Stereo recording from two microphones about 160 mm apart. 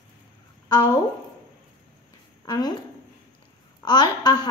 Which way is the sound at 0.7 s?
25° left (ahead or behind).